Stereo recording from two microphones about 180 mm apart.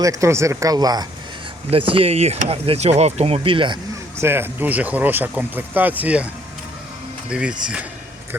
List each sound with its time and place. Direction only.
0.0 s speech: 20° right (ahead or behind)
4.2 s speech: 15° right (ahead or behind)
7.3 s speech: 5° right (ahead or behind)